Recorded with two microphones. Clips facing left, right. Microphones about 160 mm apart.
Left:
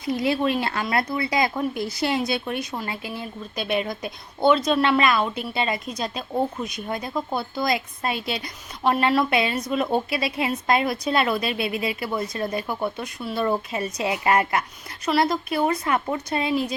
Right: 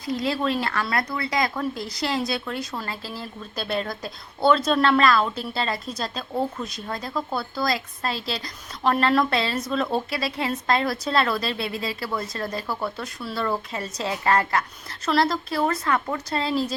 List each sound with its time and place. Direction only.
0.0 s speech: 25° left (ahead or behind)
4.5 s speech: 10° left (ahead or behind)
8.8 s speech: 10° left (ahead or behind)
9.6 s speech: 20° left (ahead or behind)